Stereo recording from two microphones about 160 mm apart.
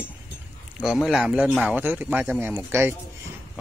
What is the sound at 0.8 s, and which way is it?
Speech, 5° right (ahead or behind).